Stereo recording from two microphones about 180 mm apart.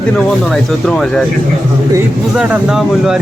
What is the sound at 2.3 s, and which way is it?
Speech, 5° right (ahead or behind).